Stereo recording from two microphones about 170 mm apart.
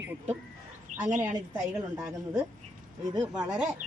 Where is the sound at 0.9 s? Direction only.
45° right (ahead or behind).